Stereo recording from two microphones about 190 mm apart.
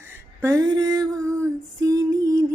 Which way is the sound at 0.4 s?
20° right (ahead or behind).